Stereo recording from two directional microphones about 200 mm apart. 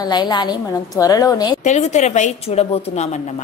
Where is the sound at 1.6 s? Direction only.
35° left (ahead or behind).